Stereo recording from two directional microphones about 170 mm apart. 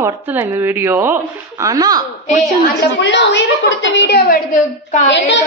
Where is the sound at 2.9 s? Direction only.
90° left.